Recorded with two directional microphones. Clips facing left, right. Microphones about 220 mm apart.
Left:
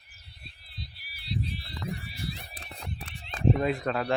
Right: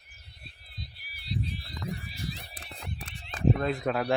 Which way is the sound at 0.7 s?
50° right (ahead or behind).